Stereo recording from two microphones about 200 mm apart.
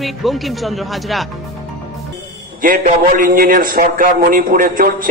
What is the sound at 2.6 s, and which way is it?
A man's voice, 45° right (ahead or behind).